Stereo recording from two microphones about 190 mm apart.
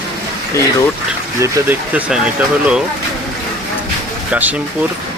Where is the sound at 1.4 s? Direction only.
10° right (ahead or behind).